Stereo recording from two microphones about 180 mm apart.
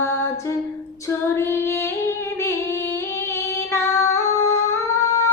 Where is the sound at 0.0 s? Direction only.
15° left (ahead or behind).